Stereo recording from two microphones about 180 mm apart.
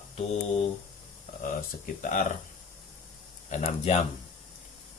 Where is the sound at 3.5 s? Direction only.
35° left (ahead or behind).